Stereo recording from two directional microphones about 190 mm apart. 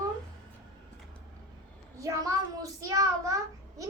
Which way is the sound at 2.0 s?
15° right (ahead or behind).